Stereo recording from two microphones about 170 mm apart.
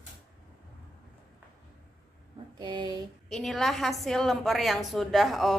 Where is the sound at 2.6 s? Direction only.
25° right (ahead or behind).